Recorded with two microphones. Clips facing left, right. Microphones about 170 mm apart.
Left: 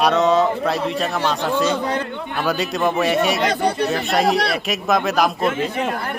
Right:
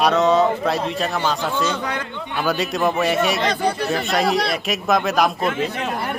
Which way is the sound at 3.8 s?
Centre (ahead or behind).